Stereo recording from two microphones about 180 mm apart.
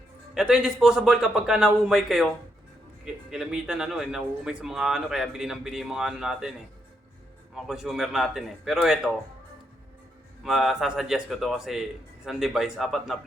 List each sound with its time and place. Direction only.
0.3 s speech: 5° right (ahead or behind)
7.5 s speech: centre (ahead or behind)
10.4 s speech: centre (ahead or behind)